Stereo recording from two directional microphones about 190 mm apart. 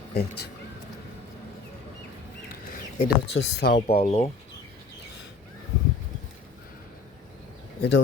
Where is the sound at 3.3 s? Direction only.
65° left (ahead or behind).